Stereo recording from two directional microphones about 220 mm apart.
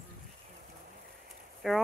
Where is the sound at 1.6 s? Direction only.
Centre (ahead or behind).